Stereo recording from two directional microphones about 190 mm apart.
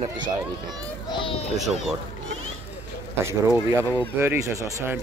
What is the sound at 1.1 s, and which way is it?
Speech, 30° left (ahead or behind).